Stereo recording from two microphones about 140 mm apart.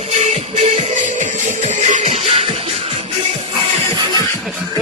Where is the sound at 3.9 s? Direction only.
30° right (ahead or behind).